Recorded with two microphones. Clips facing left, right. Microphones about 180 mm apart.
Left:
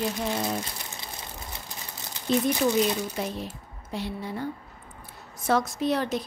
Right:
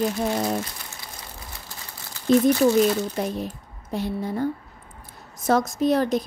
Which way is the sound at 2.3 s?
45° right (ahead or behind).